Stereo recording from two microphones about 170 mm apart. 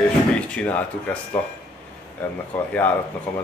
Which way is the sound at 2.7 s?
10° left (ahead or behind).